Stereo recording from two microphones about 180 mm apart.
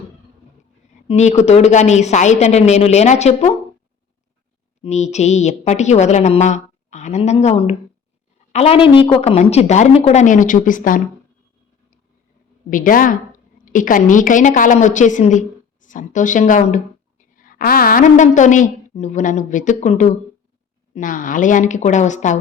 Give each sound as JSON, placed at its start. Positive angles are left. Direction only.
{"t": 1.0, "sound": "a woman's voice", "side_deg": 40}
{"t": 4.8, "sound": "a woman's voice", "side_deg": 40}
{"t": 12.7, "sound": "a woman's voice", "side_deg": 50}